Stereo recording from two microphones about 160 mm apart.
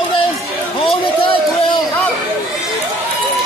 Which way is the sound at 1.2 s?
35° left (ahead or behind).